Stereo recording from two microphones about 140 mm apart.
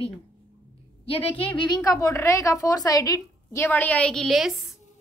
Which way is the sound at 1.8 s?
25° left (ahead or behind).